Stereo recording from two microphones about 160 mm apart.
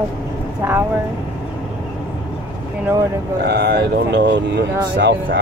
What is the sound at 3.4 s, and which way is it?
Speech, 85° right.